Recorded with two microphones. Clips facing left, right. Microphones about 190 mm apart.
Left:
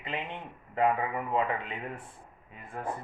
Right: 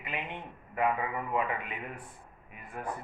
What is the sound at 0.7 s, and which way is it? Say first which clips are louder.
Speech: left 3 dB; 25° left (ahead or behind).